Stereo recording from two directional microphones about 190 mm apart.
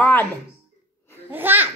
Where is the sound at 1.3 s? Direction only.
10° right (ahead or behind).